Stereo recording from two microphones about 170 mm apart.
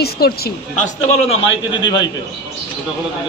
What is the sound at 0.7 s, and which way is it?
Speech, 45° left (ahead or behind).